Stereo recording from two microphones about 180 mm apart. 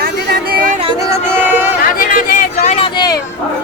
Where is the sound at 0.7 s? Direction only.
30° right (ahead or behind).